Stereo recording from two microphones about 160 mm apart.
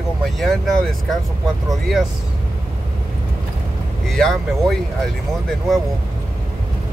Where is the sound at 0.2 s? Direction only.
Centre (ahead or behind).